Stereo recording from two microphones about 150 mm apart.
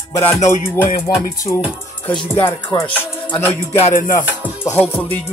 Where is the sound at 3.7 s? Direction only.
45° left (ahead or behind).